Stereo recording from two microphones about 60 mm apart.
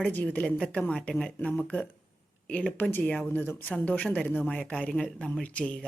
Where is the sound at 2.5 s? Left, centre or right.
Left.